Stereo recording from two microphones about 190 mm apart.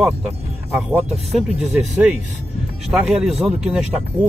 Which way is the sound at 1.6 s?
5° right (ahead or behind).